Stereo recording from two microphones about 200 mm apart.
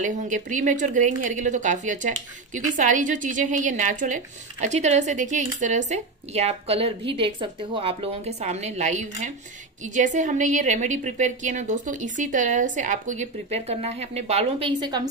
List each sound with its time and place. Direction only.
0.0 s speech: 40° right (ahead or behind); by 15.0 s 25° right (ahead or behind)